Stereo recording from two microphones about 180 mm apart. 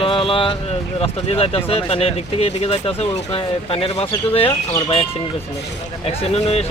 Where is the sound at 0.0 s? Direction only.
30° left (ahead or behind).